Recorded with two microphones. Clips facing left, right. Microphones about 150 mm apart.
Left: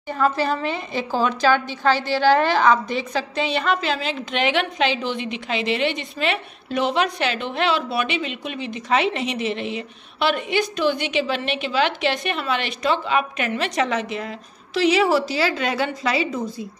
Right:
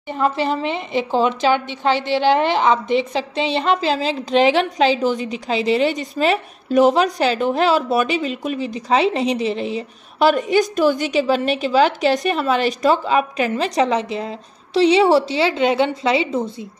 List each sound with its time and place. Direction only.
0.1 s a woman's voice: 20° right (ahead or behind)